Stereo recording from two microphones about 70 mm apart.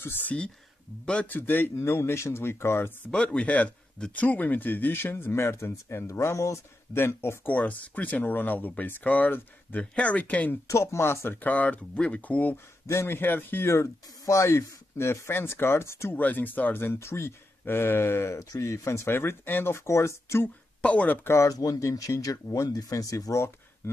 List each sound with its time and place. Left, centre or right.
0.0 s speech: left
1.0 s a man's voice: centre
1.3 s speech: left
3.1 s speech: centre; by 7.0 s left
7.0 s speech: left
7.5 s speech: left
10.7 s speech: left
11.4 s speech: left
12.8 s speech: left
16.2 s speech: left
20.8 s speech: centre
21.3 s speech: left
21.5 s speech: left